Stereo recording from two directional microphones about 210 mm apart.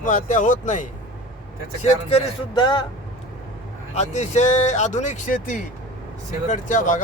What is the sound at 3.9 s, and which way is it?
Speech, 30° left (ahead or behind).